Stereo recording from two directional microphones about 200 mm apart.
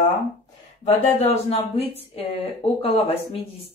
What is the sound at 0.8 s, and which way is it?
Speech, 30° left (ahead or behind).